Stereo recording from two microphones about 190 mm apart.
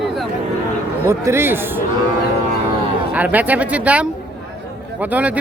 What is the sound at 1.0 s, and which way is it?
Speech, 15° right (ahead or behind).